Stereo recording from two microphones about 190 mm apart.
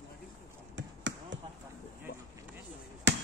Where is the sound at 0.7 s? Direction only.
70° right (ahead or behind).